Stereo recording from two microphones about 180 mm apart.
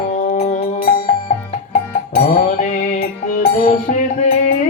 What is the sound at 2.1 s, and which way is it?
Music, 45° left (ahead or behind).